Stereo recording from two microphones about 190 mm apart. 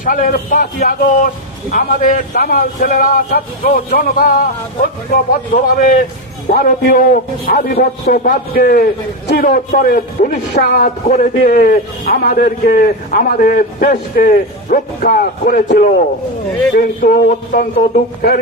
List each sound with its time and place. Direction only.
0.0 s a man's voice: 50° left (ahead or behind)